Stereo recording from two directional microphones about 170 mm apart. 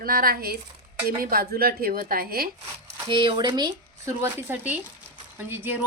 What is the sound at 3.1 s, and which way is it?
Speech, 30° right (ahead or behind).